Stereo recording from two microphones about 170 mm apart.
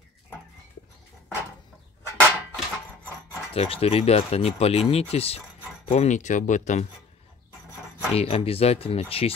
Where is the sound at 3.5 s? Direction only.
35° left (ahead or behind).